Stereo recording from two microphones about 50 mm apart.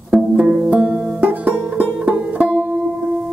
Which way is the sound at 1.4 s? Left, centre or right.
Centre.